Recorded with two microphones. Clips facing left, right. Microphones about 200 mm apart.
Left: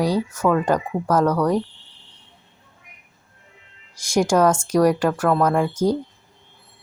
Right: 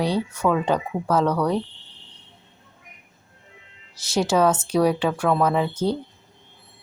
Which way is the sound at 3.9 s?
10° left (ahead or behind).